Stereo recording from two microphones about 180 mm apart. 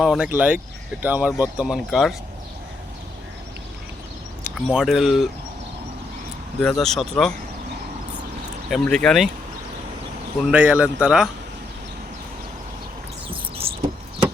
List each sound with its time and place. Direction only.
0.0 s speech: 5° right (ahead or behind)
4.5 s speech: 5° right (ahead or behind)
6.6 s speech: centre (ahead or behind)
8.7 s speech: 5° left (ahead or behind)
10.4 s speech: 5° right (ahead or behind)
13.2 s a sound: 30° right (ahead or behind)